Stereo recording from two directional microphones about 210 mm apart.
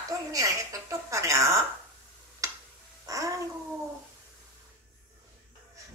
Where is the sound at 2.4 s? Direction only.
15° right (ahead or behind).